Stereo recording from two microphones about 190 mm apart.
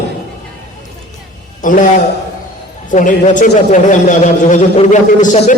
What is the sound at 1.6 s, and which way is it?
Speech, 45° left (ahead or behind).